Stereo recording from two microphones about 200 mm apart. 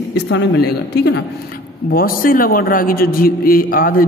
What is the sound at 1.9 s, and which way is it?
A man's voice, 45° left (ahead or behind).